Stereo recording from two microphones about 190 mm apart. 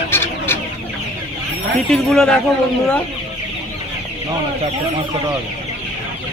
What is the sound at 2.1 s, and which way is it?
Speech, 5° left (ahead or behind).